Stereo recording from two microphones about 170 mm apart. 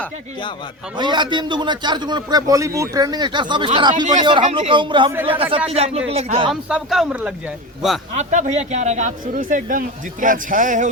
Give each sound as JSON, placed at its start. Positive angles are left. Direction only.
{"t": 0.9, "sound": "a man's voice", "side_deg": -25}
{"t": 6.5, "sound": "speech", "side_deg": -5}
{"t": 8.1, "sound": "speech", "side_deg": -45}